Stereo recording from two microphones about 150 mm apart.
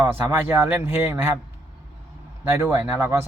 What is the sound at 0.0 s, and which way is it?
Speech, 15° right (ahead or behind).